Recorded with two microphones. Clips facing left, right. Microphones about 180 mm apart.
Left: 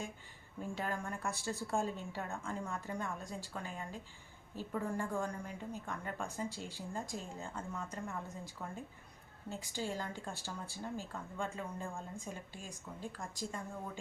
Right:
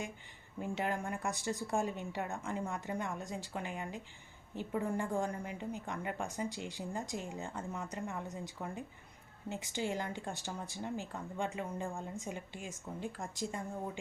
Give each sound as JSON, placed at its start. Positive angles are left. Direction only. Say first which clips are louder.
{"t": 0.6, "sound": "a woman's voice", "louder": "right 3 dB", "side_deg": -20}
{"t": 9.7, "sound": "a woman's voice", "louder": "right 3 dB", "side_deg": -20}